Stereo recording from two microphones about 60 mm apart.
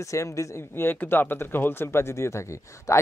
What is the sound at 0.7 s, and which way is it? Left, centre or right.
Speech, left.